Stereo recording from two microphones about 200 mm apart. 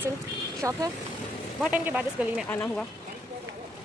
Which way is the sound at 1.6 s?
5° right (ahead or behind).